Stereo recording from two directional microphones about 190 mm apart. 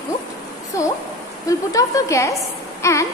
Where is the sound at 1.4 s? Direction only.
15° left (ahead or behind).